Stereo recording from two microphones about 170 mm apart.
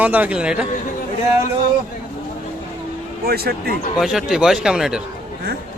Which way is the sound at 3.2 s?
65° right (ahead or behind).